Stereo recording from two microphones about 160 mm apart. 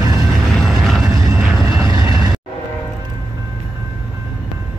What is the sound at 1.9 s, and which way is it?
Vehicle, 25° right (ahead or behind).